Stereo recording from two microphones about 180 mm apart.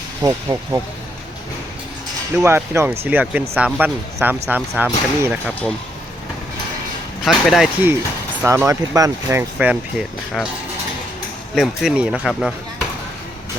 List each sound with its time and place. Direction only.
0.2 s speech: 15° right (ahead or behind)
2.3 s speech: 15° right (ahead or behind)
7.3 s speech: centre (ahead or behind)
11.5 s speech: centre (ahead or behind)